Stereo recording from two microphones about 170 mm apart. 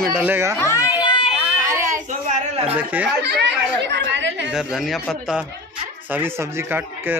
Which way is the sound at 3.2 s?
85° right.